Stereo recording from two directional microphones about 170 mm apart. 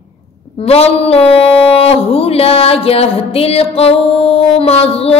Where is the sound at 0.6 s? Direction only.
35° left (ahead or behind).